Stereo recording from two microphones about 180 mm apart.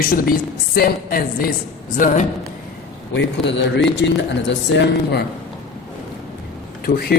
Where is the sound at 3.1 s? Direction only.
75° left (ahead or behind).